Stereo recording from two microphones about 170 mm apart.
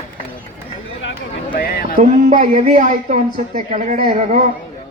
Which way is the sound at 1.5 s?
60° left (ahead or behind).